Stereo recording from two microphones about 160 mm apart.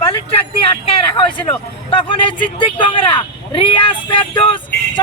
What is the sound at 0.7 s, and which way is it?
A man's voice, 35° left (ahead or behind).